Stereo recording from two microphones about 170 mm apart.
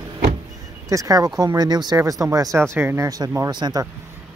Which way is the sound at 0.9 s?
20° right (ahead or behind).